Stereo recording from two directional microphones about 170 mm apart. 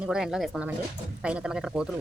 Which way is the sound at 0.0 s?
5° right (ahead or behind).